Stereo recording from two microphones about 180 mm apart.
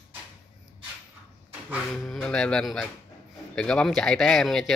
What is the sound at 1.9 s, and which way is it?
Speech, centre (ahead or behind).